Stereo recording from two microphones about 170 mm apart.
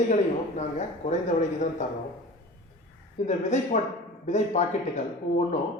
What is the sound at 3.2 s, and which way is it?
A man's voice, 45° left (ahead or behind).